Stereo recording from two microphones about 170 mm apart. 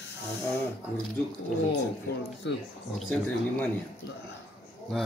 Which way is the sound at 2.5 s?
90° left.